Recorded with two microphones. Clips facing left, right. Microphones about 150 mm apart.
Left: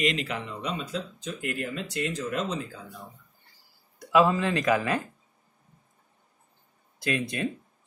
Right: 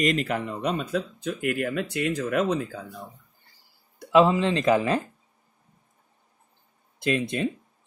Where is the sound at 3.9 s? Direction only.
25° right (ahead or behind).